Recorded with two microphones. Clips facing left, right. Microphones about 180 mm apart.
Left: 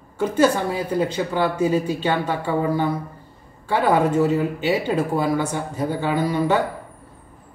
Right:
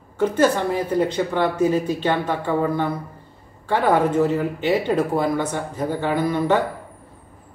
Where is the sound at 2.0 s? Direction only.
10° left (ahead or behind).